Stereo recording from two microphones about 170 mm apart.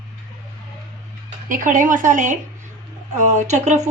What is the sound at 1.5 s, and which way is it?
A woman's voice, 50° right (ahead or behind).